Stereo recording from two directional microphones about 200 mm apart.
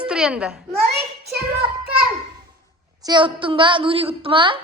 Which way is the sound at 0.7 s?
55° right (ahead or behind).